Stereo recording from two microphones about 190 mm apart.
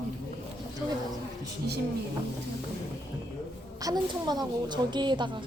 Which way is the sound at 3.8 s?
20° right (ahead or behind).